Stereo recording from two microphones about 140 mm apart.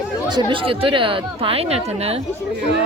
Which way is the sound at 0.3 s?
35° right (ahead or behind).